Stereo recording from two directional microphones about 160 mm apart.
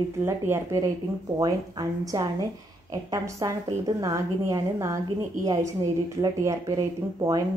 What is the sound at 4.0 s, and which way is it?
Speech, 20° right (ahead or behind).